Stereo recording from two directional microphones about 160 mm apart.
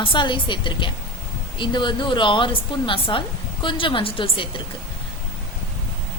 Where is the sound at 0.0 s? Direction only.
30° left (ahead or behind).